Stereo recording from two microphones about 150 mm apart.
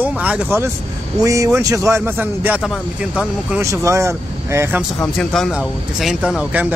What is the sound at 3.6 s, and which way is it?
A man's voice, 20° right (ahead or behind).